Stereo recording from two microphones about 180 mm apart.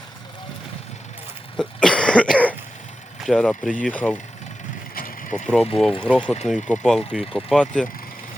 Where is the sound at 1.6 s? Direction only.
5° left (ahead or behind).